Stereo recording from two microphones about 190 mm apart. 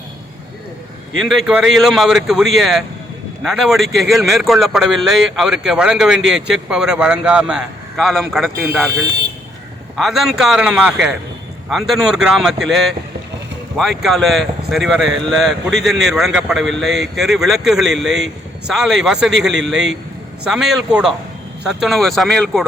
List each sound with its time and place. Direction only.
1.2 s a man's voice: centre (ahead or behind)
9.9 s a man's voice: centre (ahead or behind)
19.3 s a man's voice: 70° right (ahead or behind)
19.6 s a man's voice: centre (ahead or behind)